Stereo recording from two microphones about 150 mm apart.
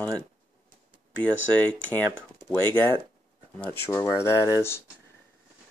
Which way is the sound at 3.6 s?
15° left (ahead or behind).